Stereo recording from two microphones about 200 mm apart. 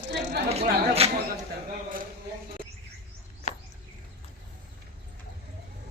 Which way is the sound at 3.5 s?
35° left (ahead or behind).